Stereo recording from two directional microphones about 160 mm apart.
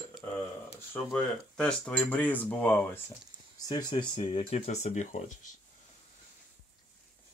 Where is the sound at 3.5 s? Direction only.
25° left (ahead or behind); by 5.2 s 45° left (ahead or behind).